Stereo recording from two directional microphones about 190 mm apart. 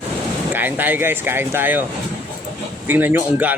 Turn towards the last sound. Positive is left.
turn(degrees=-10)  # may be behind; listen again after turning